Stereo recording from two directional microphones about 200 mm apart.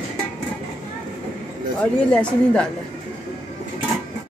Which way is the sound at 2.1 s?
5° left (ahead or behind).